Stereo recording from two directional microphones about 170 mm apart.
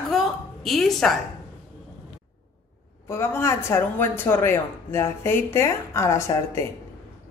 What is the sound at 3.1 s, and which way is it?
Speech, 15° left (ahead or behind).